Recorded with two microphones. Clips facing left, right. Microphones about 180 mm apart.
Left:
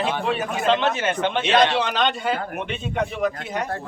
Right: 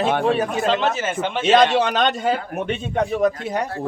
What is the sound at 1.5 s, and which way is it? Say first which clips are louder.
A man's voice: right 5 dB; 45° right (ahead or behind).